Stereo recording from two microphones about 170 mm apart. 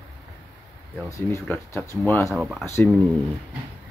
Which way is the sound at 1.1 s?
15° left (ahead or behind).